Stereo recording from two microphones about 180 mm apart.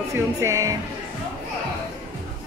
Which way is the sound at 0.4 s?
15° right (ahead or behind).